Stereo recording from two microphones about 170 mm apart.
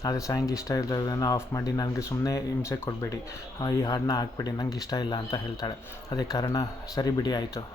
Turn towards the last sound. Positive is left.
turn(degrees=25)  # may be behind; listen again after turning